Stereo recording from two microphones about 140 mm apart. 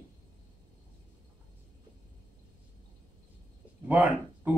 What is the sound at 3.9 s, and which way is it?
Speech, 15° right (ahead or behind).